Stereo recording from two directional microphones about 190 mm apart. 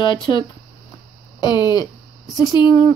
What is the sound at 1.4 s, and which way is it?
A woman's voice, 20° left (ahead or behind).